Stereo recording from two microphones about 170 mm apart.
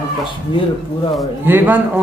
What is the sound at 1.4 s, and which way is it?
Speech, 10° right (ahead or behind).